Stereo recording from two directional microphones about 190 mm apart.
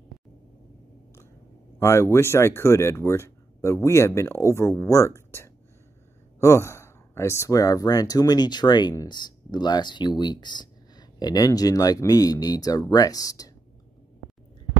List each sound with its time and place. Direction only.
1.8 s speech: 15° left (ahead or behind)